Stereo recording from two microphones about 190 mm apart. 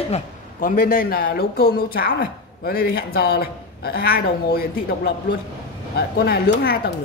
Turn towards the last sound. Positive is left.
turn(degrees=55)  # may be behind; listen again after turning